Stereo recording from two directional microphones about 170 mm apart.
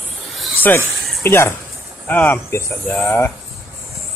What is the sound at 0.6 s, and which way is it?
Speech, 15° left (ahead or behind).